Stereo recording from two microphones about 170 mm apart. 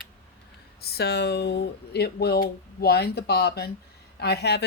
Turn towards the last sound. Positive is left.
turn(degrees=75)  # may be behind; listen again after turning